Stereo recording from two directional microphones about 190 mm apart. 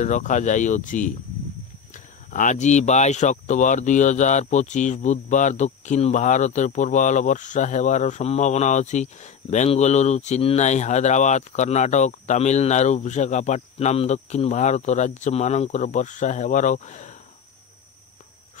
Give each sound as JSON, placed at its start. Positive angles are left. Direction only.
{"t": 0.0, "sound": "speech", "side_deg": 40}
{"t": 2.3, "sound": "speech", "side_deg": 40}